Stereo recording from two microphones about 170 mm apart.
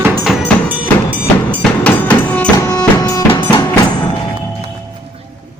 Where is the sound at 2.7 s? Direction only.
20° left (ahead or behind).